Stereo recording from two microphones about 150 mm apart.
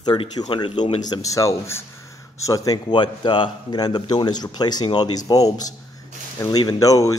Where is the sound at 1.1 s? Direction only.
20° left (ahead or behind).